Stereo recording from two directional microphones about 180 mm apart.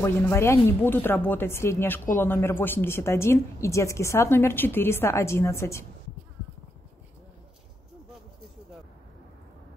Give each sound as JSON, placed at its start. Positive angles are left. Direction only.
{"t": 0.0, "sound": "a woman's voice", "side_deg": 10}